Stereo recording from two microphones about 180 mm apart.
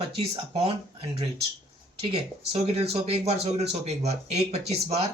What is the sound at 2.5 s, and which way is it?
Speech, 35° right (ahead or behind).